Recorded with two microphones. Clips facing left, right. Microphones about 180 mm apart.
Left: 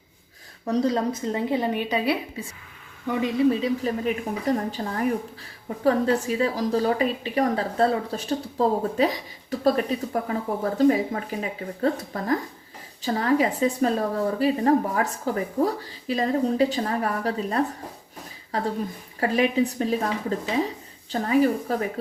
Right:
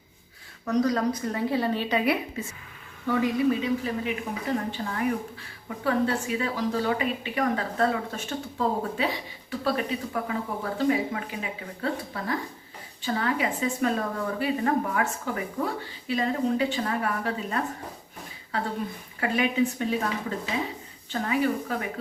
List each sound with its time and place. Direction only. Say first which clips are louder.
0.6 s a woman's voice: left 1 dB; 30° left (ahead or behind)
3.1 s a woman's voice: left 2 dB; 20° left (ahead or behind)
21.1 s a woman's voice: left 5 dB; 35° left (ahead or behind)